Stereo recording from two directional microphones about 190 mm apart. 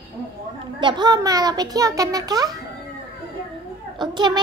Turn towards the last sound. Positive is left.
turn(degrees=-25)  # may be behind; listen again after turning